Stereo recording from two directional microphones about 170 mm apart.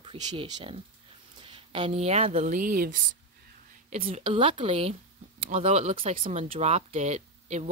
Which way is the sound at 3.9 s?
35° right (ahead or behind).